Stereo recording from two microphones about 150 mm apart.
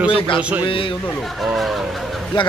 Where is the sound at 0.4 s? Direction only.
10° right (ahead or behind).